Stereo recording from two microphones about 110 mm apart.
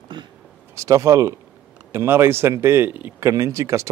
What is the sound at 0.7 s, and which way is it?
Speech, 30° right (ahead or behind).